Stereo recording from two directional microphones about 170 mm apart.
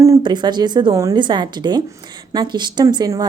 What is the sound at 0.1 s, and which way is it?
A woman's voice, 25° right (ahead or behind).